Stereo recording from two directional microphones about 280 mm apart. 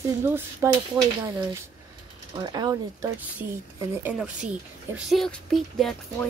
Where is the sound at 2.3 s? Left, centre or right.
Centre.